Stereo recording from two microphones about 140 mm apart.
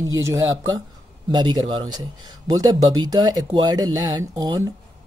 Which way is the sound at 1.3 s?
30° right (ahead or behind).